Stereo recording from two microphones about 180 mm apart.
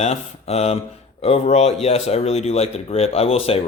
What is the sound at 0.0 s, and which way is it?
Speech, 35° left (ahead or behind).